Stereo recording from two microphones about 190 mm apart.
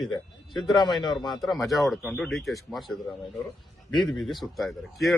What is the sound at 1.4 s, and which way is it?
A man's voice, centre (ahead or behind).